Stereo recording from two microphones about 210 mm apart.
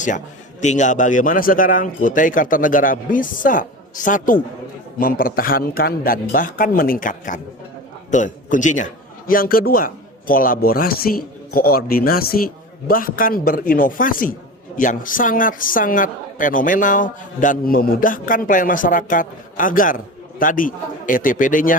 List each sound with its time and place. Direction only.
0.6 s a man's voice: 35° left (ahead or behind)